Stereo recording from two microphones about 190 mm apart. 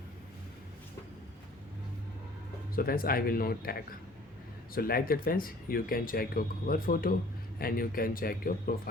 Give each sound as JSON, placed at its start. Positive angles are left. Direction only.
{"t": 2.7, "sound": "speech", "side_deg": 50}